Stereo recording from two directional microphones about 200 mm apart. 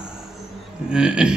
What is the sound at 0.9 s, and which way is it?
Speech, 5° right (ahead or behind).